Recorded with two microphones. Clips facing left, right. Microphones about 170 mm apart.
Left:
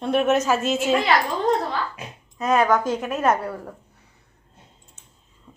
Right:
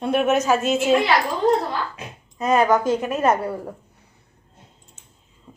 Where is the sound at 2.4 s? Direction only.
Centre (ahead or behind).